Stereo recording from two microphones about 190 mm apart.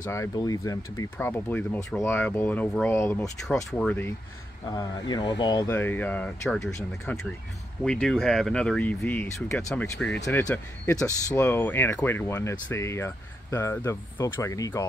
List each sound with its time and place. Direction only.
0.0 s speech: 15° left (ahead or behind)
4.6 s speech: 20° left (ahead or behind)
5.7 s speech: 10° left (ahead or behind)